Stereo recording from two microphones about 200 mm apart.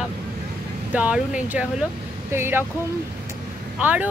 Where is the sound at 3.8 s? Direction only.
5° right (ahead or behind).